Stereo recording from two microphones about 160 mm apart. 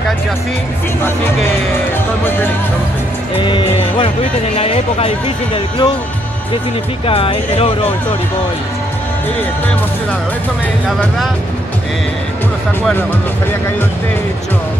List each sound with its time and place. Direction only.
2.2 s music: 15° left (ahead or behind)
3.3 s speech: 30° left (ahead or behind)
7.1 s speech: 35° left (ahead or behind)